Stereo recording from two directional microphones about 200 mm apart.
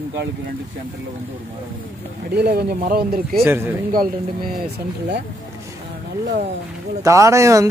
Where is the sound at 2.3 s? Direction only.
55° right (ahead or behind).